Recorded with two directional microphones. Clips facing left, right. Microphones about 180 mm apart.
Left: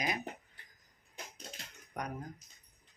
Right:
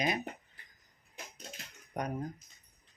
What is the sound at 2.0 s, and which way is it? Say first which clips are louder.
Speech: right 4 dB; 25° right (ahead or behind).